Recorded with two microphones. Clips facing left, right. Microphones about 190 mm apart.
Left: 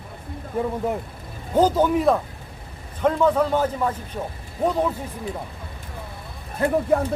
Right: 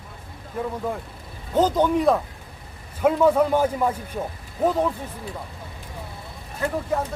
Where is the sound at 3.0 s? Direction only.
10° right (ahead or behind).